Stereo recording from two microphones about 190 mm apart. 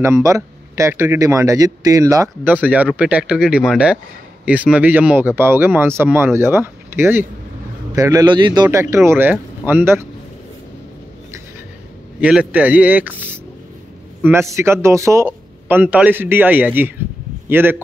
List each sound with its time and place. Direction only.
0.0 s a man's voice: 15° right (ahead or behind)
8.9 s speech: 15° right (ahead or behind)
12.2 s speech: 5° right (ahead or behind)
14.5 s a man's voice: 15° right (ahead or behind)